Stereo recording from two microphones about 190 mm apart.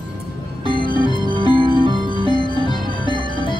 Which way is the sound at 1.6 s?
25° right (ahead or behind).